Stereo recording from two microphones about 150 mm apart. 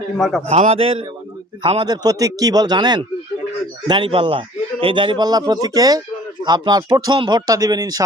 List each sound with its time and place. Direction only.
0.2 s a man's voice: centre (ahead or behind)
0.4 s a man's voice: 45° right (ahead or behind); by 8.0 s 25° right (ahead or behind)